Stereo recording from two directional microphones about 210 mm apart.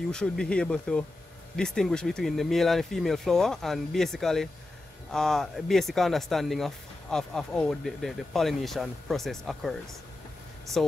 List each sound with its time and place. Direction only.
0.1 s speech: 5° left (ahead or behind)